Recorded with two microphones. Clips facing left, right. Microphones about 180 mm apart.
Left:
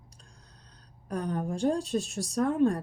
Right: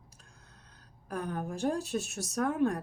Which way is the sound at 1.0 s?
5° right (ahead or behind).